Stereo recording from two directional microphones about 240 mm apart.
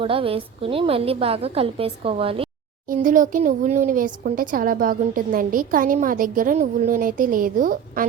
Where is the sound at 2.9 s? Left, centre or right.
Right.